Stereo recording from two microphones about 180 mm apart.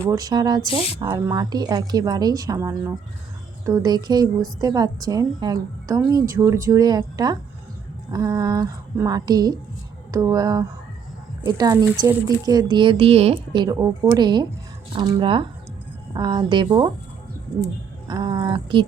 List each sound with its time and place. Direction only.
0.0 s a woman's voice: 20° right (ahead or behind)
18.1 s a woman's voice: 20° right (ahead or behind)